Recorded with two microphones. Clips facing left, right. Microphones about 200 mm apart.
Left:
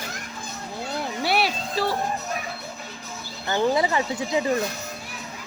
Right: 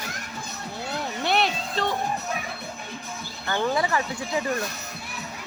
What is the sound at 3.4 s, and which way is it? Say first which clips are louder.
Speech: left 3 dB; 20° left (ahead or behind).